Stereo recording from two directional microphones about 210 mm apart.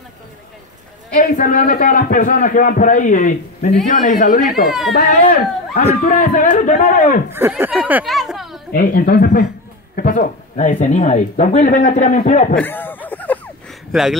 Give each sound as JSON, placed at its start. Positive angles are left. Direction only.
{"t": 1.2, "sound": "speech", "side_deg": 35}
{"t": 4.6, "sound": "speech", "side_deg": 0}
{"t": 4.9, "sound": "speech", "side_deg": 40}
{"t": 7.3, "sound": "speech", "side_deg": -10}
{"t": 8.7, "sound": "speech", "side_deg": 50}
{"t": 12.5, "sound": "a sound", "side_deg": 10}